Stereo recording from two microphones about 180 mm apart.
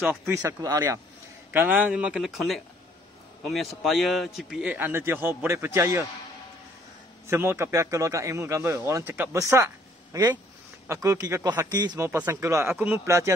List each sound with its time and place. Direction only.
0.0 s a man's voice: 10° right (ahead or behind)
7.2 s a man's voice: 15° right (ahead or behind)